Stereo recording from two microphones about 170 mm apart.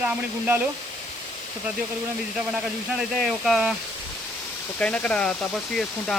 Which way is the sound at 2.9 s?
Centre (ahead or behind).